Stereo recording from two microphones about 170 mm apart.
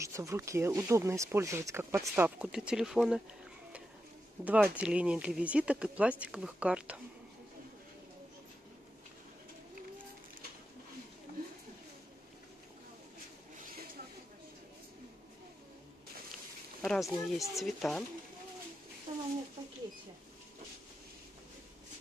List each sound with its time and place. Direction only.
0.0 s speech: 15° right (ahead or behind)
4.5 s speech: 10° right (ahead or behind)
16.8 s speech: centre (ahead or behind)
19.1 s a sound: 45° right (ahead or behind)